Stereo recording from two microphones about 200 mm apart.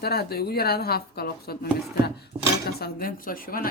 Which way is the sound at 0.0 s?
50° left (ahead or behind).